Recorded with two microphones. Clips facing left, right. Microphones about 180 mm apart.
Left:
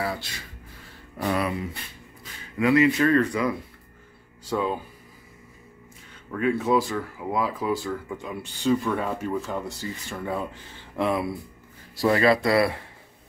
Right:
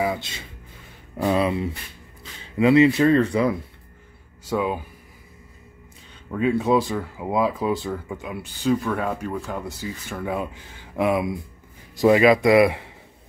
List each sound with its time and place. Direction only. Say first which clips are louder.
0.0 s a sound: right 5 dB; 20° right (ahead or behind)
2.5 s speech: right 4 dB; 25° right (ahead or behind)
4.5 s speech: right 2 dB; 10° right (ahead or behind)
6.3 s speech: right 3 dB; 20° right (ahead or behind)
8.2 s speech: right 1 dB; 5° right (ahead or behind)
10.2 s speech: right 2 dB; 10° right (ahead or behind)